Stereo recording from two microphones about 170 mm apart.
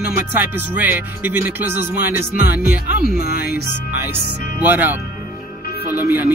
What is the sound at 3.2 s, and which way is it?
Speech, 65° left (ahead or behind).